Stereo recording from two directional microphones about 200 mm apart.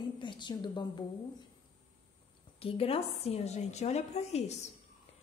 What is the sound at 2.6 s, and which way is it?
A woman's voice, 30° left (ahead or behind).